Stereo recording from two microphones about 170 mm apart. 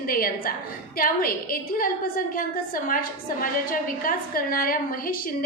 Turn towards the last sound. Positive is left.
turn(degrees=60)  # may be behind; listen again after turning